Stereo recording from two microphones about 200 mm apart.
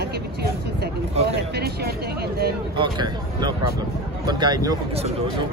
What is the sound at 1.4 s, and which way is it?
Speech, 55° right (ahead or behind).